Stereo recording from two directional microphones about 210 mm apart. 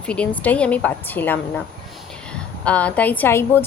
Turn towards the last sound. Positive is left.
turn(degrees=10)  # may be behind; listen again after turning